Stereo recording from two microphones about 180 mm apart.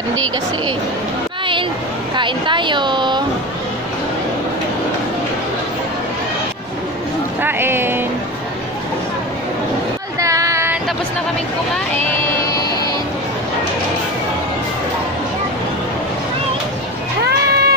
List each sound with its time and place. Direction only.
2.1 s speech: 25° right (ahead or behind)
7.4 s speech: 10° right (ahead or behind)
10.2 s child singing: 15° right (ahead or behind)
17.2 s cat: 60° right (ahead or behind)